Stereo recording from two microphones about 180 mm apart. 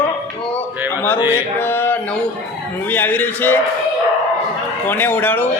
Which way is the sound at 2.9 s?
10° left (ahead or behind).